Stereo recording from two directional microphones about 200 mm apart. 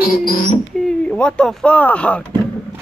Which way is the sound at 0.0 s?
50° left (ahead or behind).